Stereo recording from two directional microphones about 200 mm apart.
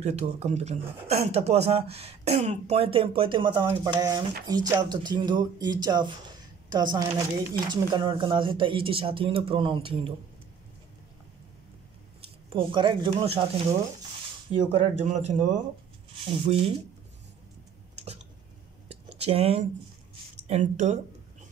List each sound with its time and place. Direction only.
0.0 s speech: 35° right (ahead or behind)
12.5 s speech: 25° right (ahead or behind)
14.5 s speech: 30° right (ahead or behind)
19.1 s speech: 30° right (ahead or behind)